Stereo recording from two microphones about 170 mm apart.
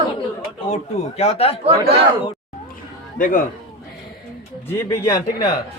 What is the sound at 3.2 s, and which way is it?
Speech, 50° left (ahead or behind).